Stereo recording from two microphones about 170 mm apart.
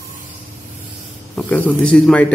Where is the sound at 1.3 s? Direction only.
10° left (ahead or behind).